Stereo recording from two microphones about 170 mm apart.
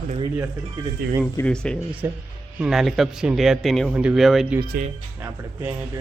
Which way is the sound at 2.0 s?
15° right (ahead or behind).